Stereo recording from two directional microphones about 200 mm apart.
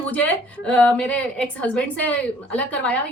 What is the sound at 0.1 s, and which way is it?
A woman's voice, 5° left (ahead or behind).